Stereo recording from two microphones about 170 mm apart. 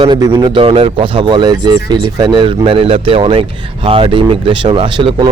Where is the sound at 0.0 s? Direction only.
25° right (ahead or behind).